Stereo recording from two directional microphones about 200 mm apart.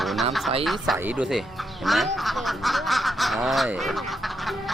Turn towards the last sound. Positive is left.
turn(degrees=0)  # may be behind; listen again after turning